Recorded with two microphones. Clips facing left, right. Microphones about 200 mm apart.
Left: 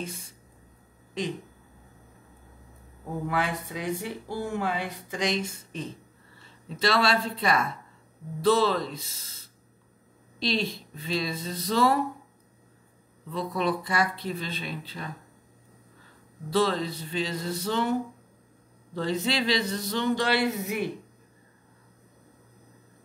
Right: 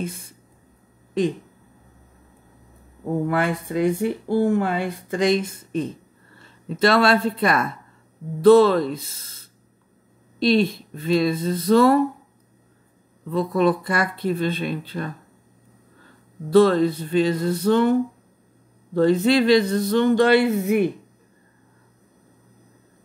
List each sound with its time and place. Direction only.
3.3 s speech: 55° right (ahead or behind)
10.4 s speech: 55° right (ahead or behind)
13.3 s speech: 50° right (ahead or behind)
16.4 s speech: 55° right (ahead or behind)
18.9 s speech: 55° right (ahead or behind)